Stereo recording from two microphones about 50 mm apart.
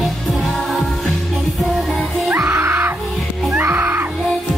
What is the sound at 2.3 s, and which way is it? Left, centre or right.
Music, right.